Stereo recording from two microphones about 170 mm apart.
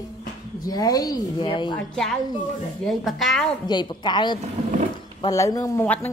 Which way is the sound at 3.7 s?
25° left (ahead or behind).